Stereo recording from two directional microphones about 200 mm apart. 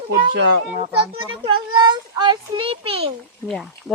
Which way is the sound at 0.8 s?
30° right (ahead or behind).